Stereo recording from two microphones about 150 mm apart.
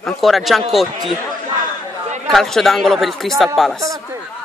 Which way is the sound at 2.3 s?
Centre (ahead or behind).